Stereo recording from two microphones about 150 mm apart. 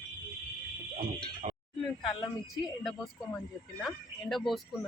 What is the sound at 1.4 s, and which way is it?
Chink, 50° right (ahead or behind).